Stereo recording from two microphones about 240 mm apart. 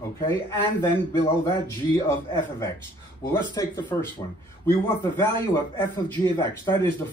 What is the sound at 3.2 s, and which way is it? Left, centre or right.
A man's voice, centre.